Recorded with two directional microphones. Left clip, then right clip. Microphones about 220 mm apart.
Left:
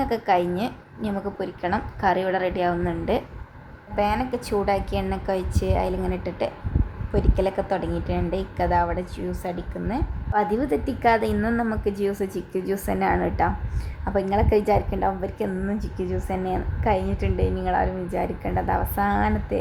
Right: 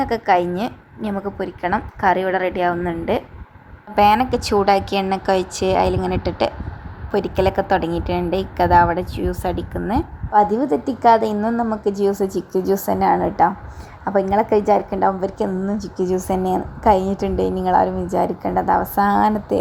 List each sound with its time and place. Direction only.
0.0 s a woman's voice: 20° right (ahead or behind)
3.9 s a woman's voice: 30° right (ahead or behind)
11.5 s a woman's voice: 5° right (ahead or behind)
11.9 s a woman's voice: 20° right (ahead or behind)